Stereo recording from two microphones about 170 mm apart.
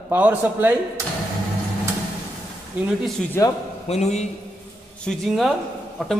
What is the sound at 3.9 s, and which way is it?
Speech, 40° left (ahead or behind).